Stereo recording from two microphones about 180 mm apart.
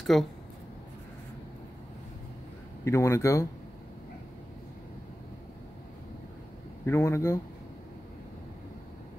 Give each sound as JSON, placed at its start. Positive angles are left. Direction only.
{"t": 0.0, "sound": "speech", "side_deg": 0}
{"t": 2.8, "sound": "speech", "side_deg": 15}
{"t": 6.9, "sound": "speech", "side_deg": 15}